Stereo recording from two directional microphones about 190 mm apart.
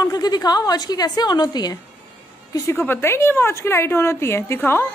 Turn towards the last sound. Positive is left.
turn(degrees=10)  # may be behind; listen again after turning